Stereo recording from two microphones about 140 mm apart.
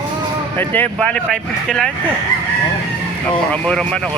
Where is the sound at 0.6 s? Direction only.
10° left (ahead or behind).